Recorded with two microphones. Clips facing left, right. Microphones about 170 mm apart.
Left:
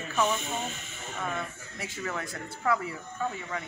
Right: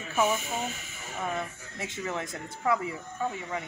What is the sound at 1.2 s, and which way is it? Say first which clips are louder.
Speech: right 2 dB; 20° right (ahead or behind).